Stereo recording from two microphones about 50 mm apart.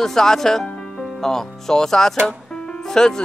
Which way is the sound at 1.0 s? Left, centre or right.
Centre.